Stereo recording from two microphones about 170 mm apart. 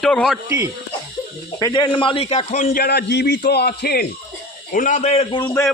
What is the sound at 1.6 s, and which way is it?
A man's voice, 25° left (ahead or behind).